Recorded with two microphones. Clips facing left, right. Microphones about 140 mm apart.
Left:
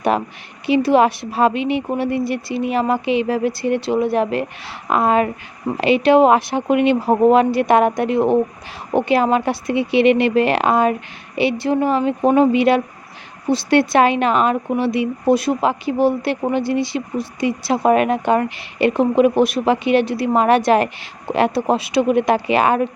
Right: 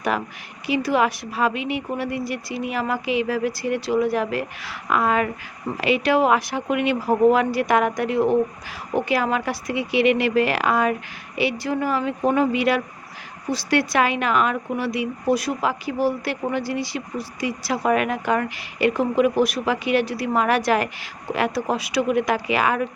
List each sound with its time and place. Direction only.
0.1 s speech: 25° left (ahead or behind)